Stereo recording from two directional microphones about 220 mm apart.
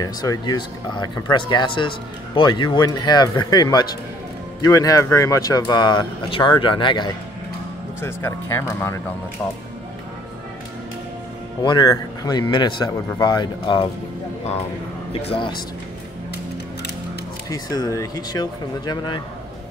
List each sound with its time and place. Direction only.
0.0 s speech: 20° left (ahead or behind)
11.6 s speech: 20° left (ahead or behind)
15.1 s speech: 25° left (ahead or behind)
17.5 s speech: 15° left (ahead or behind)